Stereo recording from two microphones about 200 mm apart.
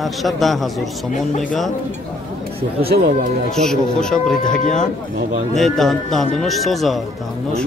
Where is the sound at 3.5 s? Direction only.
5° left (ahead or behind).